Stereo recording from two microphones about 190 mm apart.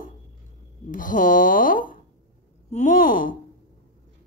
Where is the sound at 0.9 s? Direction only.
45° left (ahead or behind).